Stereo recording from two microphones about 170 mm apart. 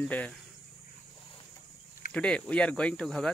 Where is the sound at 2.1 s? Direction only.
5° left (ahead or behind).